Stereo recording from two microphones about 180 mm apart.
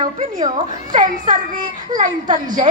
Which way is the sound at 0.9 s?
50° right (ahead or behind).